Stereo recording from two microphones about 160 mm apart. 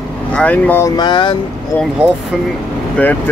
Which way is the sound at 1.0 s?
30° left (ahead or behind).